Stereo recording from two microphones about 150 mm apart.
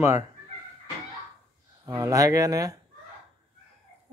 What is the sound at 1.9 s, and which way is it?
Speech, 20° right (ahead or behind).